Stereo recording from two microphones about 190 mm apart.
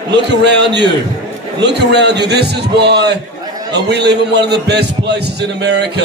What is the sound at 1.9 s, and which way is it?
A man's voice, 60° right (ahead or behind).